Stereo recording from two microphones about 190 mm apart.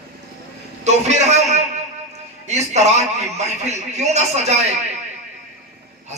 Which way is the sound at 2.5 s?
35° right (ahead or behind).